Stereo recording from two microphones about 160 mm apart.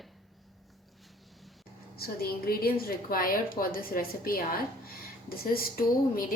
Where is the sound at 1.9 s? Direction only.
70° left (ahead or behind).